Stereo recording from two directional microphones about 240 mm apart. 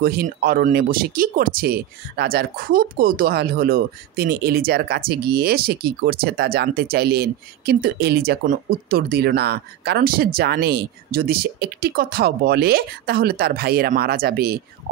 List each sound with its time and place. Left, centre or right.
0.0 s speech: right